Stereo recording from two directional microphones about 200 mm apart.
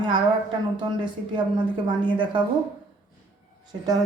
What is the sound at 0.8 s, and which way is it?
Speech, 25° right (ahead or behind).